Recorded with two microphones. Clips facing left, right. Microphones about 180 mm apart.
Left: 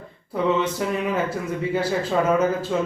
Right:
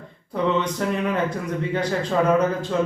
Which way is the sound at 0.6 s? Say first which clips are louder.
Even; 5° left (ahead or behind).